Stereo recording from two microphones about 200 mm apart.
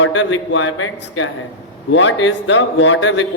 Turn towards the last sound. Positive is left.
turn(degrees=75)  # may be behind; listen again after turning